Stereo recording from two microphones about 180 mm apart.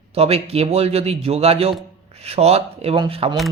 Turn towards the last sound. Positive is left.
turn(degrees=-30)  # may be behind; listen again after turning